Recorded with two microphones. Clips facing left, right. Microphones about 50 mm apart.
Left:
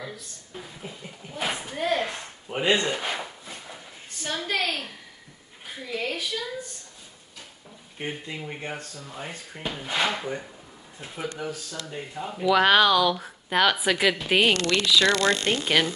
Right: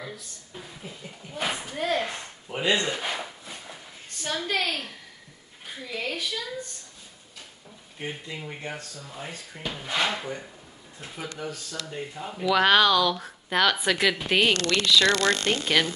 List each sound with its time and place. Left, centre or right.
0.0 s a woman's voice: centre
2.5 s speech: centre
3.0 s a sound: centre
5.8 s a woman's voice: centre
8.1 s a woman's voice: centre
14.5 s speech: left
15.6 s speech: centre